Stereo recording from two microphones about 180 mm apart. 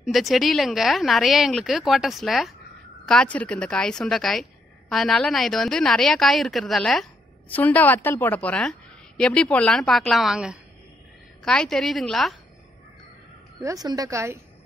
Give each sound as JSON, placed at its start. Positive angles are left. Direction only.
{"t": 0.0, "sound": "a woman's voice", "side_deg": 0}
{"t": 13.6, "sound": "a woman's voice", "side_deg": -20}